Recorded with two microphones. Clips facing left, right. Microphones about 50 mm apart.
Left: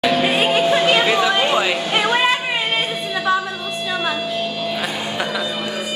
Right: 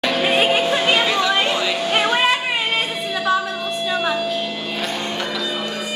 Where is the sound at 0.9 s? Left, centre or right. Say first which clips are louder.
Left 2 dB; centre.